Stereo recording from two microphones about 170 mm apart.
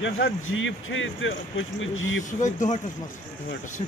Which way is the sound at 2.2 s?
45° left (ahead or behind).